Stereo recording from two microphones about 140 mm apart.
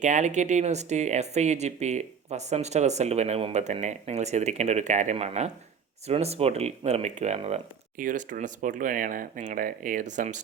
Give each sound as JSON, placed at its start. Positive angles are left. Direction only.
{"t": 0.0, "sound": "speech", "side_deg": -60}
{"t": 7.9, "sound": "speech", "side_deg": -65}